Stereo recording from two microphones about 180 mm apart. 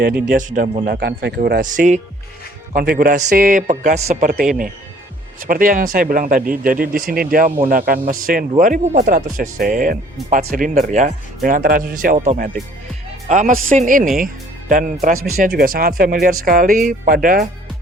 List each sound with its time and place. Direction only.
0.3 s speech: 45° right (ahead or behind)
0.9 s speech: 65° right (ahead or behind); by 2.0 s 45° right (ahead or behind)
2.7 s speech: 55° right (ahead or behind)
4.3 s speech: 55° right (ahead or behind)
12.1 s speech: 40° right (ahead or behind)